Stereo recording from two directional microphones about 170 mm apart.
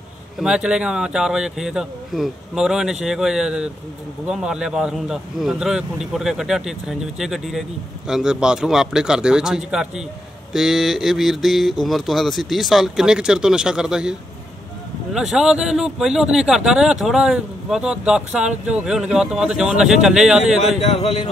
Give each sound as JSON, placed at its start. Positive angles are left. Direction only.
{"t": 0.4, "sound": "speech", "side_deg": -5}
{"t": 15.1, "sound": "speech", "side_deg": -5}
{"t": 20.8, "sound": "a man's voice", "side_deg": 35}